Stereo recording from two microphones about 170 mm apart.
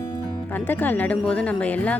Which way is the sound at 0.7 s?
10° left (ahead or behind).